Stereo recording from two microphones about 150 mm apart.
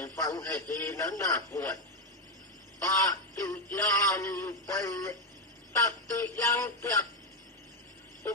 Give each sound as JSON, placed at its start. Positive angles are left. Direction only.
{"t": 0.0, "sound": "speech", "side_deg": 20}
{"t": 2.9, "sound": "speech", "side_deg": 20}